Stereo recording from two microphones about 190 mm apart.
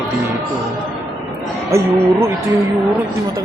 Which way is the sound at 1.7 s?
15° right (ahead or behind).